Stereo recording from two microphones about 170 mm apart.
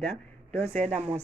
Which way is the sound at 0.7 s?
45° right (ahead or behind).